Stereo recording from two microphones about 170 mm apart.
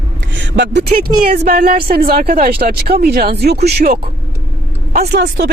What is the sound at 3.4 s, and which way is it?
Speech, 75° right (ahead or behind).